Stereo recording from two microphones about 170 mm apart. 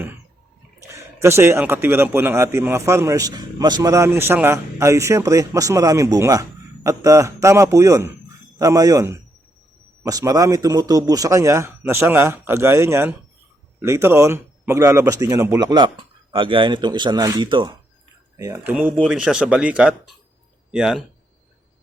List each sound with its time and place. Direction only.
0.9 s a man's voice: 15° right (ahead or behind)
18.3 s a man's voice: 15° right (ahead or behind)